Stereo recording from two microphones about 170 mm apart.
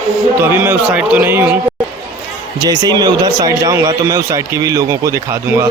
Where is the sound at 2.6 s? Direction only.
25° right (ahead or behind).